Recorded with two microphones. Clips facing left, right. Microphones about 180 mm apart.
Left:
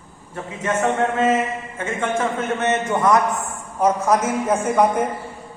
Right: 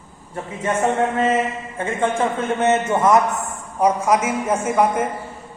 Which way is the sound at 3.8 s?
10° right (ahead or behind).